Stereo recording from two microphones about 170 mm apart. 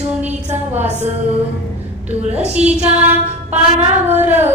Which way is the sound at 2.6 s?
40° right (ahead or behind).